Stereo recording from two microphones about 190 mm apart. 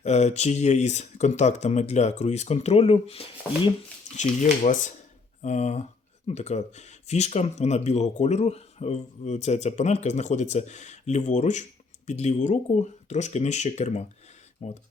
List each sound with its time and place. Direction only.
0.0 s speech: 35° left (ahead or behind)